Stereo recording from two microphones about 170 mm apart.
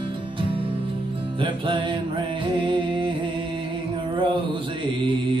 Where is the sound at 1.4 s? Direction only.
30° right (ahead or behind).